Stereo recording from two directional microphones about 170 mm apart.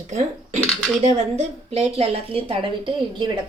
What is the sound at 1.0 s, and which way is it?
A woman's voice, 40° right (ahead or behind).